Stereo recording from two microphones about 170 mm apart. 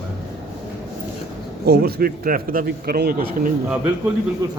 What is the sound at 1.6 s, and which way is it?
Speech, 60° right (ahead or behind).